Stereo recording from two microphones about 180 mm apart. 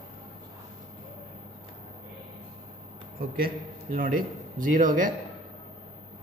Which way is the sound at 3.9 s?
50° right (ahead or behind).